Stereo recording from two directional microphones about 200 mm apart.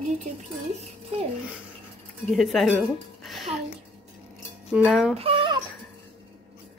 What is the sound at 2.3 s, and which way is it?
Speech, centre (ahead or behind).